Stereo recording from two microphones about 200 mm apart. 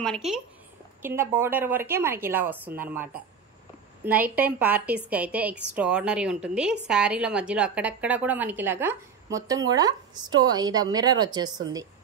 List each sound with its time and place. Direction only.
0.0 s a woman's voice: centre (ahead or behind)
1.0 s a woman's voice: 10° right (ahead or behind)